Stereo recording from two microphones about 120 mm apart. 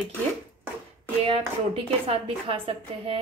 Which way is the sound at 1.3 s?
55° right (ahead or behind).